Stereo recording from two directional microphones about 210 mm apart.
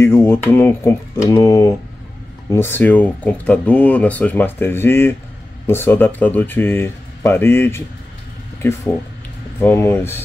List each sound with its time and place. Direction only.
0.0 s speech: 10° left (ahead or behind)
9.6 s speech: 10° left (ahead or behind)